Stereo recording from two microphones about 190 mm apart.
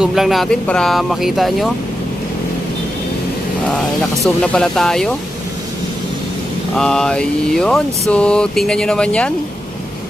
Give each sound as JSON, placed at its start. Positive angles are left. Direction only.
{"t": 0.0, "sound": "speech", "side_deg": 0}
{"t": 4.4, "sound": "speech", "side_deg": 5}
{"t": 6.7, "sound": "speech", "side_deg": 5}